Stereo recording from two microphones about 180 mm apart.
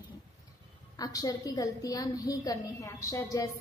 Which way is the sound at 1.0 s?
20° left (ahead or behind).